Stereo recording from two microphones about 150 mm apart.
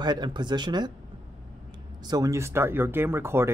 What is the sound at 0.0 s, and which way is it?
Speech, 30° right (ahead or behind).